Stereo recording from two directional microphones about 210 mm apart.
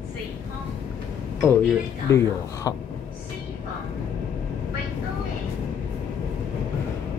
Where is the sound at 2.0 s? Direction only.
15° left (ahead or behind).